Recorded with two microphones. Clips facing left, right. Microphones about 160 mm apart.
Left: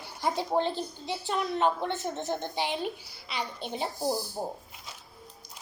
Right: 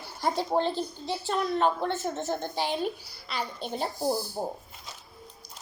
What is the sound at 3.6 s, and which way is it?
Speech, 45° right (ahead or behind).